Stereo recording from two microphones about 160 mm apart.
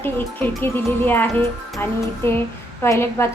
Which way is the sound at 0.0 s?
10° left (ahead or behind).